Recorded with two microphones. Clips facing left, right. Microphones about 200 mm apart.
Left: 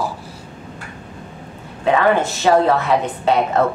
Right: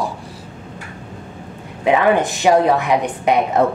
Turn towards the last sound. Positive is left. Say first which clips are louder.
# right 1 dB
turn(degrees=-15)  # may be behind; listen again after turning